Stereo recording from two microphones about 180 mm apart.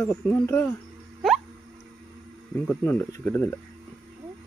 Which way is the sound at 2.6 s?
10° left (ahead or behind).